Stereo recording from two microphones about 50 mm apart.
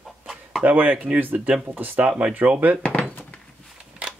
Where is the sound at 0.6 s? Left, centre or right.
Right.